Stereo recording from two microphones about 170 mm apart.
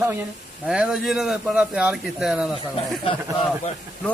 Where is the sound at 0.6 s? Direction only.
5° right (ahead or behind).